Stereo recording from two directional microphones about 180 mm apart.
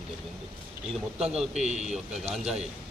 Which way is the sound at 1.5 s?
40° right (ahead or behind).